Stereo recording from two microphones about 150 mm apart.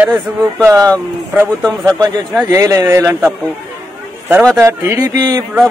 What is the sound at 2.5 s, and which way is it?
Speech, 20° right (ahead or behind).